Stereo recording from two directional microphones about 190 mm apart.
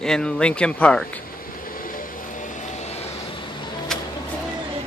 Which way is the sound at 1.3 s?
50° left (ahead or behind).